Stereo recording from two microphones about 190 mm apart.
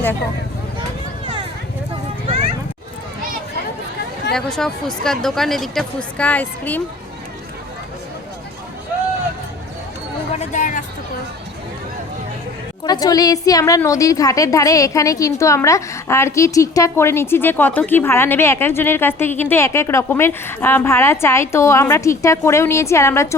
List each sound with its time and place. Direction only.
4.4 s speech: 5° left (ahead or behind)
10.3 s a sound: 35° left (ahead or behind)
12.8 s a woman's voice: 20° left (ahead or behind)